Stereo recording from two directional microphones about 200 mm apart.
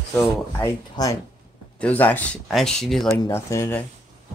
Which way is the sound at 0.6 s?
15° left (ahead or behind).